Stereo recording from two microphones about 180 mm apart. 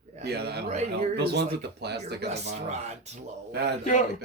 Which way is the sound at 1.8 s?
65° right (ahead or behind).